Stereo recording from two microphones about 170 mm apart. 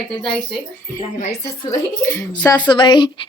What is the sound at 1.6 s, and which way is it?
Speech, 15° left (ahead or behind).